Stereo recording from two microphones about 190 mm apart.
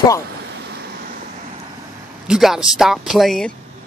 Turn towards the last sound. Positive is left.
turn(degrees=0)  # may be behind; listen again after turning